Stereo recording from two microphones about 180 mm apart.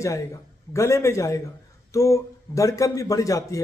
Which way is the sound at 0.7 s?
15° left (ahead or behind).